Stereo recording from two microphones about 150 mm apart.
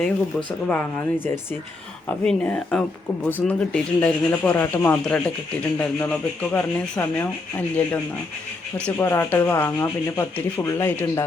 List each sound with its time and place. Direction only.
0.0 s speech: 10° left (ahead or behind)